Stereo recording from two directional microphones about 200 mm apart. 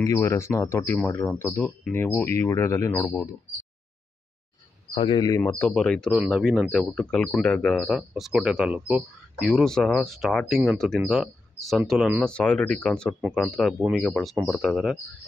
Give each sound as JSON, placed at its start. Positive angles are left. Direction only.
{"t": 0.0, "sound": "speech", "side_deg": 15}
{"t": 4.9, "sound": "speech", "side_deg": 20}
{"t": 5.4, "sound": "speech", "side_deg": 10}